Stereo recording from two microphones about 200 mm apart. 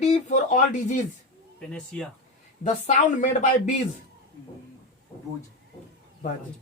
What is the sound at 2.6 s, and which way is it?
Speech, 40° left (ahead or behind).